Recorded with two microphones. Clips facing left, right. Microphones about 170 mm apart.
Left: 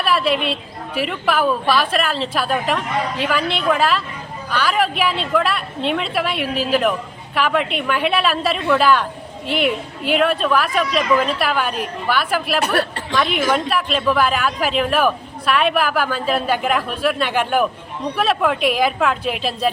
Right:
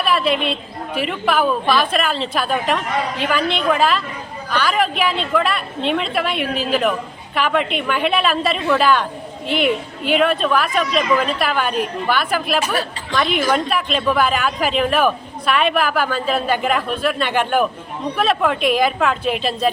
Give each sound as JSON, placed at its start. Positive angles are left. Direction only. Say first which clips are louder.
{"t": 0.0, "sound": "a man's voice", "louder": "even", "side_deg": 5}
{"t": 12.5, "sound": "a woman's voice", "louder": "left 3 dB", "side_deg": 65}
{"t": 13.1, "sound": "a man's voice", "louder": "right 1 dB", "side_deg": 0}